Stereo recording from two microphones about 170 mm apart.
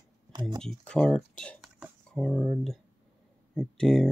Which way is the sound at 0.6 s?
5° left (ahead or behind).